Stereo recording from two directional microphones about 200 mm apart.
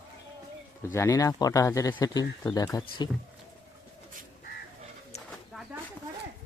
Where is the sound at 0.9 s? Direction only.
15° left (ahead or behind).